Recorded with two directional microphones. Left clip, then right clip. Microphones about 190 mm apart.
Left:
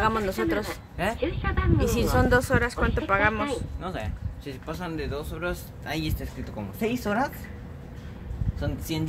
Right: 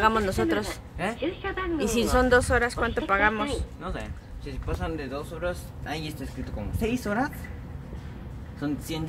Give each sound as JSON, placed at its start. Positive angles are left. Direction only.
{"t": 0.0, "sound": "a woman's voice", "side_deg": 0}
{"t": 0.9, "sound": "speech", "side_deg": 45}
{"t": 1.2, "sound": "a woman's voice", "side_deg": 5}
{"t": 3.8, "sound": "speech", "side_deg": 45}
{"t": 8.5, "sound": "speech", "side_deg": 50}